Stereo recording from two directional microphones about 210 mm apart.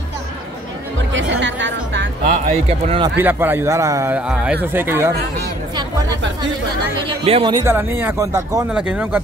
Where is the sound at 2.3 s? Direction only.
30° right (ahead or behind).